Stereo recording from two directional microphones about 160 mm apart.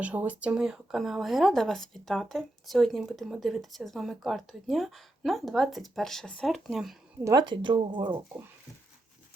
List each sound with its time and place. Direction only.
0.0 s speech: 10° right (ahead or behind)
7.3 s speech: 25° right (ahead or behind)